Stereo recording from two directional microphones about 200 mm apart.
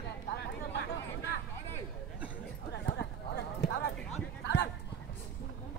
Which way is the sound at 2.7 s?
60° left (ahead or behind).